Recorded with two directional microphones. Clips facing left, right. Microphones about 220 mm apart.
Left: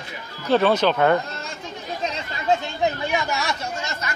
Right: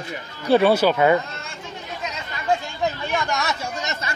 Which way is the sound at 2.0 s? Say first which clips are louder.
Left 2 dB; 30° left (ahead or behind).